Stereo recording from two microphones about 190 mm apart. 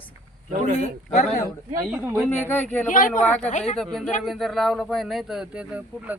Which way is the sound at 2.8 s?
45° left (ahead or behind).